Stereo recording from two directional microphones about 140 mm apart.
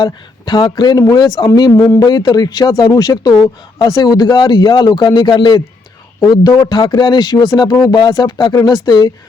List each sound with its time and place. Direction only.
0.0 s speech: 30° left (ahead or behind)